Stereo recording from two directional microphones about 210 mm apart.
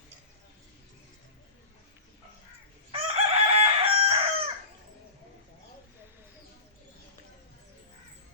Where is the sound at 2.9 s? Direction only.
30° right (ahead or behind).